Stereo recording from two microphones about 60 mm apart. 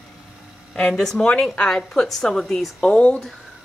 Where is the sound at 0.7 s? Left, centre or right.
Centre.